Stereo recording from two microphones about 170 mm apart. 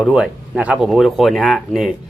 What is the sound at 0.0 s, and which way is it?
Speech, 5° right (ahead or behind).